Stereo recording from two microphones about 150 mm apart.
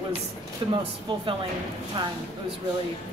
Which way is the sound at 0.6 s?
30° right (ahead or behind).